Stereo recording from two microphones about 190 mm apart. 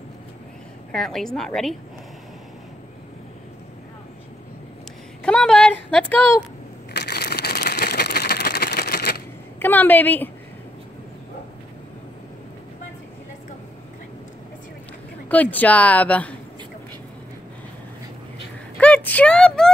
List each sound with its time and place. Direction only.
0.9 s a woman's voice: centre (ahead or behind)
5.2 s a sound: 5° left (ahead or behind)
6.9 s crushing: 60° left (ahead or behind)
9.6 s speech: 10° left (ahead or behind)
15.2 s speech: 10° left (ahead or behind)
18.8 s a sound: 10° left (ahead or behind)